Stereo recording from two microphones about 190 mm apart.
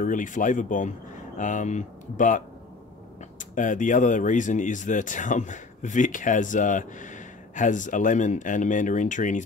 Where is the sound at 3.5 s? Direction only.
40° left (ahead or behind).